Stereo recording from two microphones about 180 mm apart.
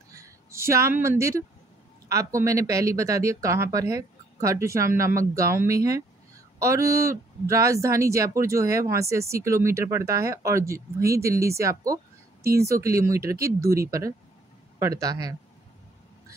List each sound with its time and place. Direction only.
0.1 s a man's voice: 15° right (ahead or behind)